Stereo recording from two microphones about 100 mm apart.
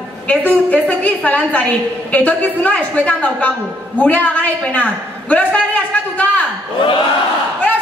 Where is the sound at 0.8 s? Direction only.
15° left (ahead or behind).